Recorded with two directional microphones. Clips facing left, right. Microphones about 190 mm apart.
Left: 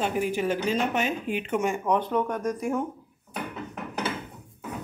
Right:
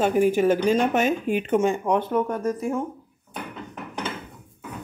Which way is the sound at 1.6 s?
15° right (ahead or behind).